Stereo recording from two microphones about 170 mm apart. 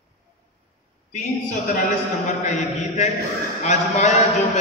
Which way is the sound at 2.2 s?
45° left (ahead or behind).